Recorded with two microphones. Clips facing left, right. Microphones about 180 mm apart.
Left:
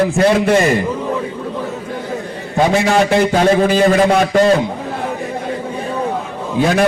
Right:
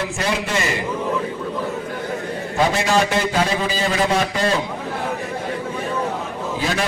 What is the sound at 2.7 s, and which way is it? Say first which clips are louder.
A man's voice: left 6 dB; 60° left (ahead or behind).